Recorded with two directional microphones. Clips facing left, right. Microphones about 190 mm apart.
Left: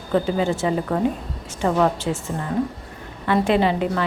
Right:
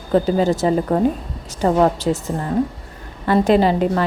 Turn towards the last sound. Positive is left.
turn(degrees=-40)  # may be behind; listen again after turning